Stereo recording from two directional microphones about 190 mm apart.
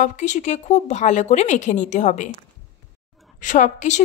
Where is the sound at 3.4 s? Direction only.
40° left (ahead or behind).